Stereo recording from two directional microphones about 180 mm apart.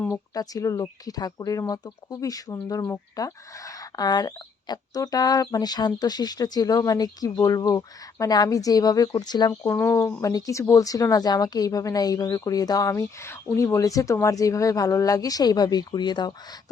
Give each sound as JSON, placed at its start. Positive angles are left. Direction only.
{"t": 0.0, "sound": "speech", "side_deg": 15}